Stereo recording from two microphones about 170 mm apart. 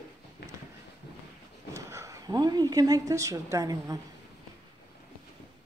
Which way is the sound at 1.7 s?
15° right (ahead or behind).